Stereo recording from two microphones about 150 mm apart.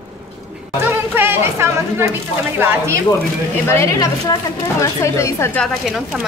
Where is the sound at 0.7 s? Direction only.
15° right (ahead or behind).